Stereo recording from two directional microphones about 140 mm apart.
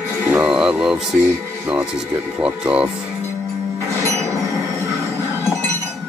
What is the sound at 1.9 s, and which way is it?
Speech, 5° right (ahead or behind).